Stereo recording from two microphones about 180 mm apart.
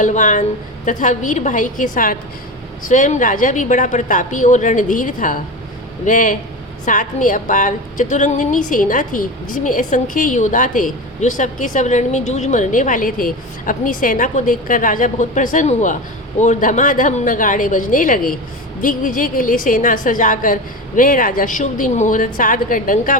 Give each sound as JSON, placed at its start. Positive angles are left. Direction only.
{"t": 0.0, "sound": "a woman's voice", "side_deg": 45}